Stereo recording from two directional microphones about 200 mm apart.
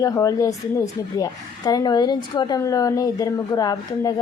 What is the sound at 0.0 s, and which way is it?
A woman's voice, 15° left (ahead or behind).